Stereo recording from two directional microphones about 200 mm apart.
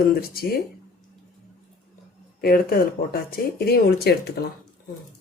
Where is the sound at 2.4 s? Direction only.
50° left (ahead or behind).